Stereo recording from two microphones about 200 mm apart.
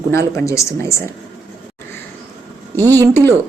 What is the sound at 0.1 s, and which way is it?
Speech, 15° left (ahead or behind).